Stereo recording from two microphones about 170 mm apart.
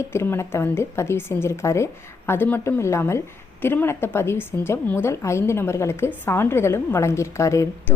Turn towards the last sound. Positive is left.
turn(degrees=15)  # may be behind; listen again after turning